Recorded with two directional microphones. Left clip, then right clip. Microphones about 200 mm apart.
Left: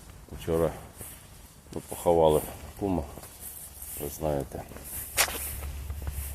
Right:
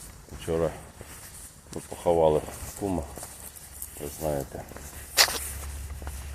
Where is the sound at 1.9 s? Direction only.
15° left (ahead or behind).